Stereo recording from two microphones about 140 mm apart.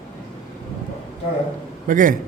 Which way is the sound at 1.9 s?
70° right (ahead or behind).